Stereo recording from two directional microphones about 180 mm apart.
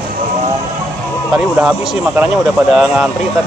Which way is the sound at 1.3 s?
5° right (ahead or behind).